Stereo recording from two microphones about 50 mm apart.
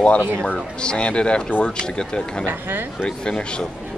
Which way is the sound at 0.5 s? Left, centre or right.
Left.